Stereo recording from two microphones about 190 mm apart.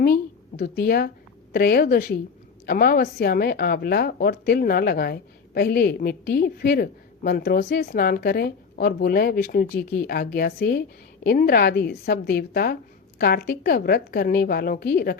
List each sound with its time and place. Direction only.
0.0 s a woman's voice: 55° left (ahead or behind)